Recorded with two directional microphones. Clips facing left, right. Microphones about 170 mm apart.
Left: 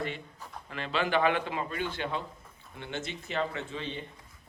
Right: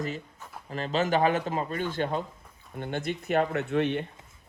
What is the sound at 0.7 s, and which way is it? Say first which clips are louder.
A man's voice: right 3 dB; 40° right (ahead or behind).